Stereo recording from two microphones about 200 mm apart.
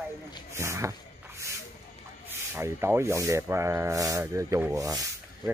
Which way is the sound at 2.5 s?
10° right (ahead or behind).